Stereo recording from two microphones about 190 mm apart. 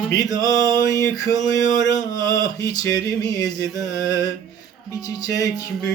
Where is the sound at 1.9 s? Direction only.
20° left (ahead or behind).